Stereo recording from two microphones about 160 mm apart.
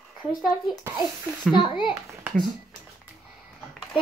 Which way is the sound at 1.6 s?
30° left (ahead or behind).